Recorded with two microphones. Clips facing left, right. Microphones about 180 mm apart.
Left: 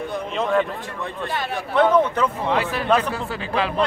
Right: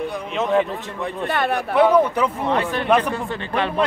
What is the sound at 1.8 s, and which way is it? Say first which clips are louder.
Speech: right 1 dB; 10° right (ahead or behind).